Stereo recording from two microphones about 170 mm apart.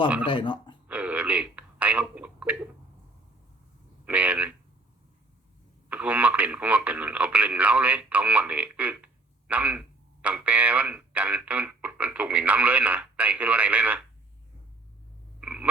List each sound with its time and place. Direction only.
0.3 s speech: 30° left (ahead or behind)
0.9 s a sound: 10° right (ahead or behind)
4.0 s a sound: 10° right (ahead or behind)
5.9 s radio: 10° right (ahead or behind)
9.5 s speech: 10° right (ahead or behind)
15.4 s frog: 5° right (ahead or behind)